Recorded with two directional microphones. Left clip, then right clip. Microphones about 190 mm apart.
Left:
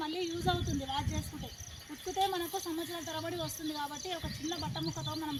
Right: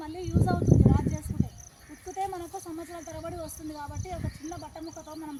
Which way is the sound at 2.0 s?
5° right (ahead or behind).